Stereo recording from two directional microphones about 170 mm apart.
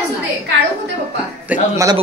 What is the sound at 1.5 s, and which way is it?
Speech, 20° right (ahead or behind).